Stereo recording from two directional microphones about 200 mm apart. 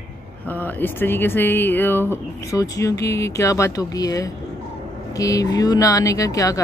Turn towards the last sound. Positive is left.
turn(degrees=15)  # may be behind; listen again after turning